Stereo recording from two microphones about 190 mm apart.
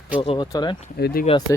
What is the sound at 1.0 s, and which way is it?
Speech, 50° left (ahead or behind).